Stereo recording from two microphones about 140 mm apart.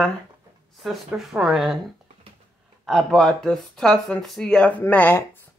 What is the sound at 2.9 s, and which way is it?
Speech, centre (ahead or behind).